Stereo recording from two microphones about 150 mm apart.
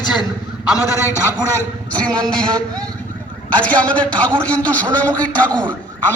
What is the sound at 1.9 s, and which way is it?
Speech, 5° left (ahead or behind).